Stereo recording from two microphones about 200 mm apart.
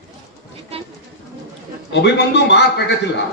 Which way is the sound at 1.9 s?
60° left (ahead or behind).